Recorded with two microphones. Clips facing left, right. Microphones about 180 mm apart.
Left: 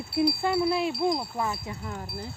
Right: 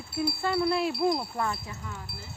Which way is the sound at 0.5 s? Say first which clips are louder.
Left 1 dB; centre (ahead or behind).